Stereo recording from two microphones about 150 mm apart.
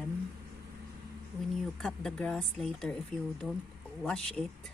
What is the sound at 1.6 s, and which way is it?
Speech, 5° left (ahead or behind).